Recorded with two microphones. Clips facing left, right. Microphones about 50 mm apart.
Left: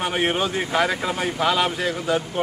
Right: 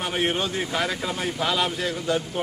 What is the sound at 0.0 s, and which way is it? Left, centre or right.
Speech, centre.